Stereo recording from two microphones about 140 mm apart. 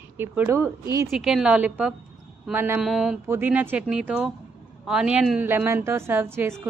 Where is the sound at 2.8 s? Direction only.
5° right (ahead or behind).